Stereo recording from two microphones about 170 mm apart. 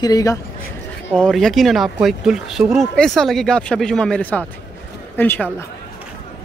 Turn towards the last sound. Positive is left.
turn(degrees=10)  # may be behind; listen again after turning